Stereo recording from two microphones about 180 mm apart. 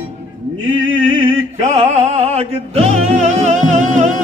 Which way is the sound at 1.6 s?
40° right (ahead or behind).